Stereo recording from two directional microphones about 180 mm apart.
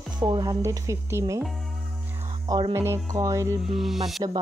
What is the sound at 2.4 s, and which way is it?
Speech, 20° right (ahead or behind).